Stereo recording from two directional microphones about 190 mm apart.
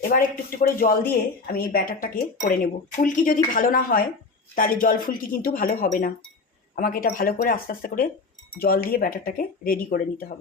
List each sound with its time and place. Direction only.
0.1 s speech: 50° left (ahead or behind)